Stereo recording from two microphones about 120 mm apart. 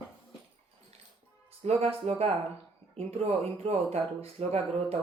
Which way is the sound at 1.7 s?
55° right (ahead or behind).